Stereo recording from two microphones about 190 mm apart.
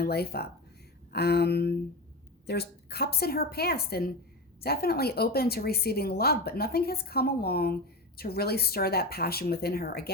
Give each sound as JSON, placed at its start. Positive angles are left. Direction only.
{"t": 0.0, "sound": "a woman's voice", "side_deg": 55}